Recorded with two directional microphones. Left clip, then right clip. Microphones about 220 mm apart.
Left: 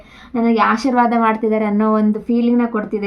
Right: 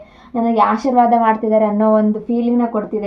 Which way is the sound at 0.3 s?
30° left (ahead or behind).